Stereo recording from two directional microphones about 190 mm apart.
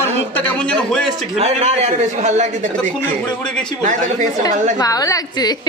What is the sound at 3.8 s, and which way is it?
Speech, 40° right (ahead or behind).